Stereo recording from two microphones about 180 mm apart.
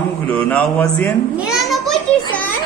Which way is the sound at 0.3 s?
10° left (ahead or behind).